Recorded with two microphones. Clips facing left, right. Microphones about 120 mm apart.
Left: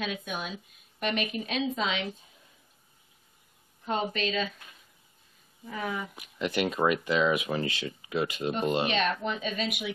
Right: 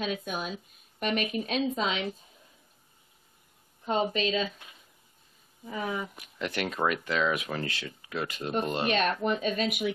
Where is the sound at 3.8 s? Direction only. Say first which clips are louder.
Right 2 dB; centre (ahead or behind).